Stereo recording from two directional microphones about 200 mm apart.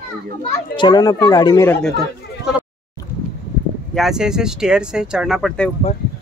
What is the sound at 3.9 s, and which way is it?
Speech, centre (ahead or behind).